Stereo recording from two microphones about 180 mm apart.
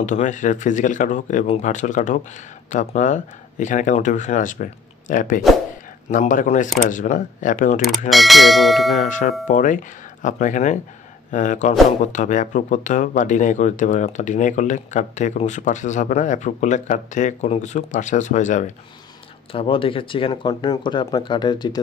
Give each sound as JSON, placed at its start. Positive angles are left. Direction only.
{"t": 0.0, "sound": "speech", "side_deg": 45}
{"t": 8.1, "sound": "speech", "side_deg": 0}
{"t": 8.9, "sound": "speech", "side_deg": 45}
{"t": 19.5, "sound": "speech", "side_deg": 30}